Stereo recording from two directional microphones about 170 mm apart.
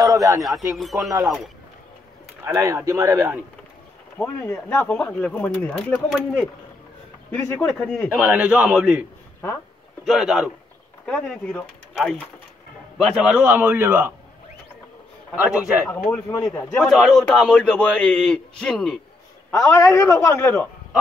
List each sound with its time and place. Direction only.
0.0 s a sound: 20° right (ahead or behind)
0.4 s speech: centre (ahead or behind)
2.4 s a man's voice: 15° right (ahead or behind)
4.2 s speech: 10° left (ahead or behind)
8.2 s a man's voice: 10° right (ahead or behind)
10.0 s a man's voice: centre (ahead or behind)
15.4 s speech: 5° right (ahead or behind)
16.1 s speech: 15° left (ahead or behind)
16.7 s speech: centre (ahead or behind)
19.5 s speech: 15° left (ahead or behind)